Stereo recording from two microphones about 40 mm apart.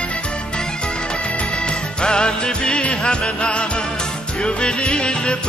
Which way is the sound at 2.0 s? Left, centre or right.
Left.